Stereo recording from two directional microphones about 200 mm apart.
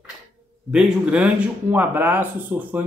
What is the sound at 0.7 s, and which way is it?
Speech, 5° right (ahead or behind).